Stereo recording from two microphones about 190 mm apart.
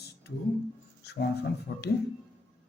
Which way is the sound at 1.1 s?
60° left (ahead or behind).